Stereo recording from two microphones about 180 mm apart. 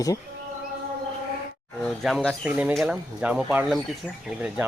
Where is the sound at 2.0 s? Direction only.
Centre (ahead or behind).